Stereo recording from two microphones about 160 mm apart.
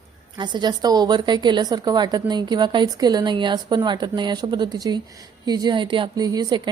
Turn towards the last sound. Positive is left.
turn(degrees=-25)  # may be behind; listen again after turning